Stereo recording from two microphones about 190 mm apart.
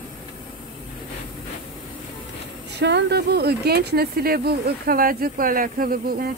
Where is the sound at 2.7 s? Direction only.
65° right (ahead or behind).